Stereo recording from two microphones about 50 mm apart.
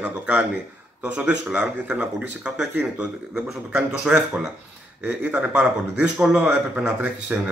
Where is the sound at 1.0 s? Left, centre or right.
Right.